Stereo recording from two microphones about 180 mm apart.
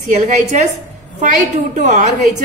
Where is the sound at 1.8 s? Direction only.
40° right (ahead or behind).